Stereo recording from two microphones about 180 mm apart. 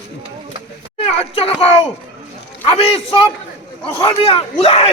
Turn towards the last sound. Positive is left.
turn(degrees=35)  # may be behind; listen again after turning